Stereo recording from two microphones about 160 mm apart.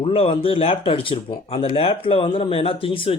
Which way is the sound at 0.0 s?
40° left (ahead or behind).